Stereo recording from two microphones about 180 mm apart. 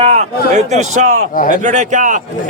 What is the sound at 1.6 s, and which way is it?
Speech, 40° right (ahead or behind).